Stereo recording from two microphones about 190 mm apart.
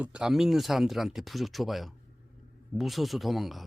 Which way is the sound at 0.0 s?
5° right (ahead or behind).